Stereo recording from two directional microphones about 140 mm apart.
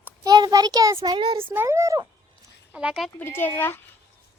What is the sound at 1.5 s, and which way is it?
Speech, 15° right (ahead or behind).